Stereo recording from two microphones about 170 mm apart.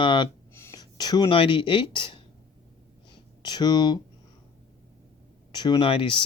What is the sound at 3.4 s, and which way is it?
Speech, 25° left (ahead or behind).